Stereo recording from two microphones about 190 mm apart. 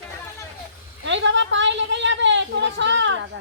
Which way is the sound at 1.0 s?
75° right (ahead or behind).